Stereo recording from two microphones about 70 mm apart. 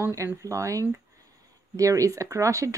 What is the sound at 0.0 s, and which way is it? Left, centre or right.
Speech, right.